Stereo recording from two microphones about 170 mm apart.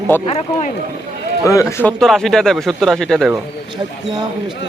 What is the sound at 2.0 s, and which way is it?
A man's voice, centre (ahead or behind).